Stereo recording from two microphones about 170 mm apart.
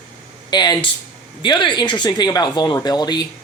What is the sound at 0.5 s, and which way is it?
Speech, 25° left (ahead or behind).